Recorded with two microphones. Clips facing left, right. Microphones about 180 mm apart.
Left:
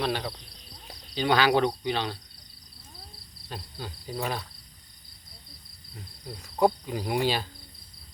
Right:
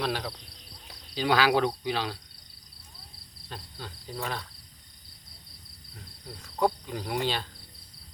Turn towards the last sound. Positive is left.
turn(degrees=10)  # may be behind; listen again after turning